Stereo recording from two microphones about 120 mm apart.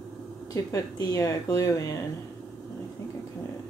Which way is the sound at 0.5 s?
30° left (ahead or behind).